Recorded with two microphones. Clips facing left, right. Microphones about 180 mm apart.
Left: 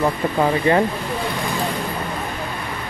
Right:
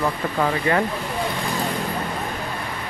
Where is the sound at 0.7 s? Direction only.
25° left (ahead or behind).